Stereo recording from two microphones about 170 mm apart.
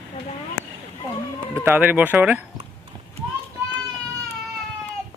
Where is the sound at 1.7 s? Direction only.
10° right (ahead or behind).